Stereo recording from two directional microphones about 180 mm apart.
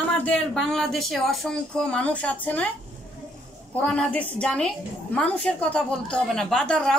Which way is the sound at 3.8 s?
5° left (ahead or behind).